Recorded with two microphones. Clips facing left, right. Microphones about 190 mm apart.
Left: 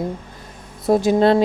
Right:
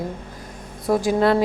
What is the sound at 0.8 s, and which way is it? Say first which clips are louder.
Speech: left 3 dB; 25° left (ahead or behind).